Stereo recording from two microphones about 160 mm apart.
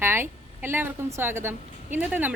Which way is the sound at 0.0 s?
15° right (ahead or behind).